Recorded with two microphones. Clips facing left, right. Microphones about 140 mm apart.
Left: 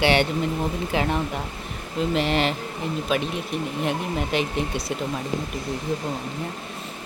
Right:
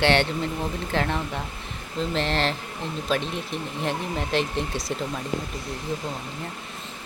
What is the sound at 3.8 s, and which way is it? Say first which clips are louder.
Speech: right 1 dB; 5° left (ahead or behind).